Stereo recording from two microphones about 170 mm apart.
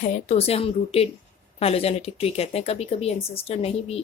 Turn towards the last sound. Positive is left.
turn(degrees=35)  # may be behind; listen again after turning